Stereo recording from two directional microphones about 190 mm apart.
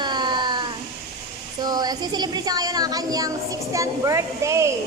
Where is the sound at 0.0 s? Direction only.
25° right (ahead or behind).